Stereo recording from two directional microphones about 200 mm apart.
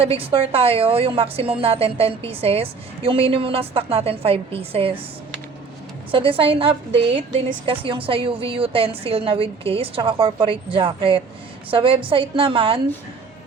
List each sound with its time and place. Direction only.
0.0 s a woman's voice: 30° right (ahead or behind)
6.1 s a woman's voice: 25° right (ahead or behind)